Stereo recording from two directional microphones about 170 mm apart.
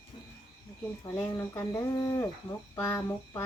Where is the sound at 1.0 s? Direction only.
15° left (ahead or behind).